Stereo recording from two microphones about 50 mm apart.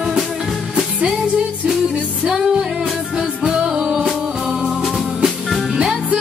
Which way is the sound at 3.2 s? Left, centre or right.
Centre.